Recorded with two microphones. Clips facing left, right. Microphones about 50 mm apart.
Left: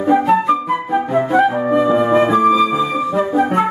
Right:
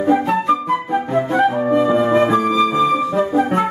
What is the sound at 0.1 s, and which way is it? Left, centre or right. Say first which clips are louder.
Flute: left 3 dB; centre.